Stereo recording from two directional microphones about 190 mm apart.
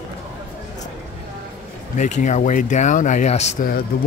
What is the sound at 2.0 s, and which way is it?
Speech, 40° left (ahead or behind).